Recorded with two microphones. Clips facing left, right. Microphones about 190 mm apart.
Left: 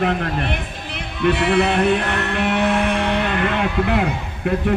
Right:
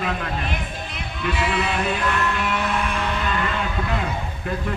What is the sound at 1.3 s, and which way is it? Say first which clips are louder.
Speech: left 7 dB; 65° left (ahead or behind).